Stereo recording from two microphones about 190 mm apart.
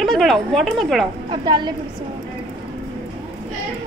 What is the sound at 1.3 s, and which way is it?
Speech, 25° right (ahead or behind).